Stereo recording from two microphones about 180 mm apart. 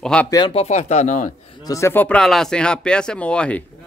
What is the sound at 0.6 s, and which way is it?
Speech, 40° left (ahead or behind).